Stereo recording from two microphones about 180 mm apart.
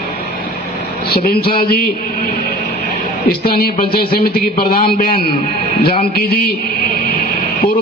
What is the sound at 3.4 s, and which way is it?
A man's voice, 60° left (ahead or behind).